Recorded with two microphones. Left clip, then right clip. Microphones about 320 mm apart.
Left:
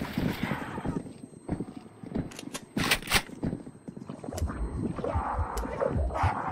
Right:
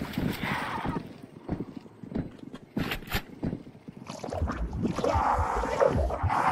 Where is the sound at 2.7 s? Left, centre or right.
Centre.